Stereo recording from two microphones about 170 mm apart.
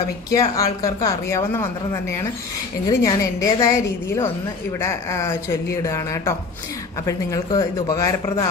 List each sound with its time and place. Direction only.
0.3 s speech: 20° left (ahead or behind)